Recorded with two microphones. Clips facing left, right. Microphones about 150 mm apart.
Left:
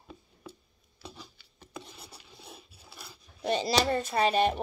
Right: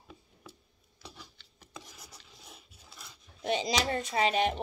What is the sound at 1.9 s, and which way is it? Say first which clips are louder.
Filing: left 3 dB; 30° left (ahead or behind).